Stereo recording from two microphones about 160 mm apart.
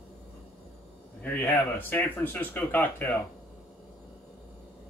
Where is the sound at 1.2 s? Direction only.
10° left (ahead or behind).